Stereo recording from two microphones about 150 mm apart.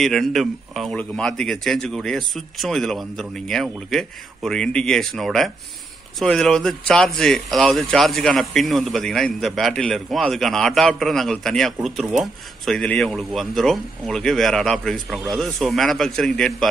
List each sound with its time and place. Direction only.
0.0 s speech: centre (ahead or behind)